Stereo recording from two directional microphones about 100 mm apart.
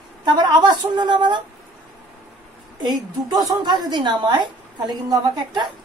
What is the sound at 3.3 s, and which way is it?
A woman's voice, 45° right (ahead or behind).